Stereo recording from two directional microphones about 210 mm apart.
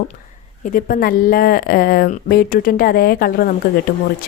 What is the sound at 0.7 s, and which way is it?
Speech, 45° left (ahead or behind).